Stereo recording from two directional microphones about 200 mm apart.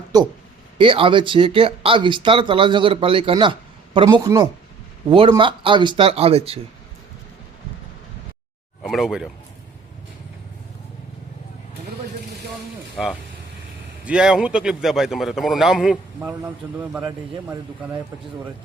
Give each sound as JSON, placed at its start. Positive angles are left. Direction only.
{"t": 0.1, "sound": "speech", "side_deg": -20}
{"t": 8.8, "sound": "speech", "side_deg": 0}
{"t": 13.0, "sound": "a man's voice", "side_deg": 0}